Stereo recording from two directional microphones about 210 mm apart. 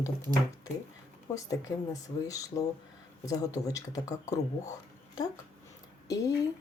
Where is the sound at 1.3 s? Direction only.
15° left (ahead or behind).